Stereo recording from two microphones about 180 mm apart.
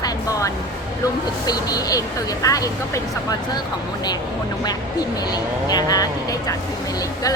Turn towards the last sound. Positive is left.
turn(degrees=20)  # may be behind; listen again after turning